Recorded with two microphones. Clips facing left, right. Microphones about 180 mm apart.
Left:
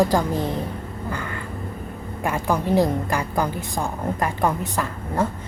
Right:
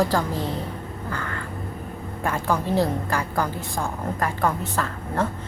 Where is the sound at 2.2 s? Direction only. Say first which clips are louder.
Left 2 dB; 15° left (ahead or behind).